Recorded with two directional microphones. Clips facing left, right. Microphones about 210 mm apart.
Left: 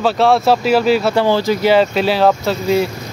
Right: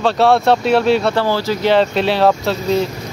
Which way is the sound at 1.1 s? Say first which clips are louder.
Left 3 dB; 15° left (ahead or behind).